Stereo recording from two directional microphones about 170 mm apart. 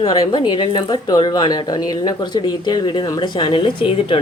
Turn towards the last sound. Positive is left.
turn(degrees=30)  # may be behind; listen again after turning